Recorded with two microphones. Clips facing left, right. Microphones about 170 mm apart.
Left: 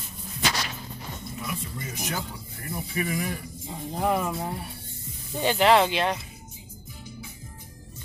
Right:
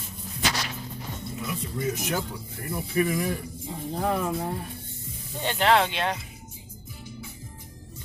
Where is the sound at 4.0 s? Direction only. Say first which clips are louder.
Left 1 dB; 10° left (ahead or behind).